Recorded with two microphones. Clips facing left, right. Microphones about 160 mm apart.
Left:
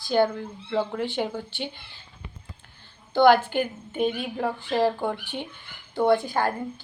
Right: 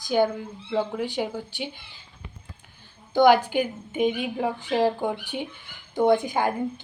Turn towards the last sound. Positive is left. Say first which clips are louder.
# right 1 dB
turn(degrees=-15)  # may be behind; listen again after turning